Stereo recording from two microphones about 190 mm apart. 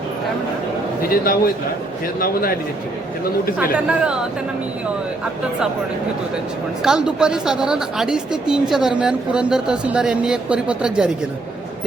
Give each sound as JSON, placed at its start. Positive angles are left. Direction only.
{"t": 1.1, "sound": "a man's voice", "side_deg": 50}
{"t": 3.6, "sound": "a woman's voice", "side_deg": -5}
{"t": 6.8, "sound": "a woman's voice", "side_deg": -5}